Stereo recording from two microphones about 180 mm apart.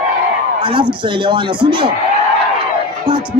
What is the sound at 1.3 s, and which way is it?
Speech, 25° right (ahead or behind).